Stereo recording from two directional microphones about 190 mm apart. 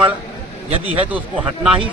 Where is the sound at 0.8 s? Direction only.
10° right (ahead or behind).